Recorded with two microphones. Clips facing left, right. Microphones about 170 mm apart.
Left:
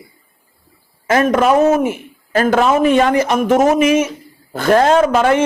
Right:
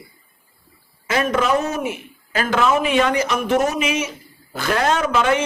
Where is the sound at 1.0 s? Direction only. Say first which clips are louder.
Left 6 dB; 50° left (ahead or behind).